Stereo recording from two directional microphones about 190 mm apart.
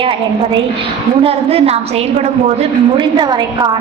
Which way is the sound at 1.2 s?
30° right (ahead or behind).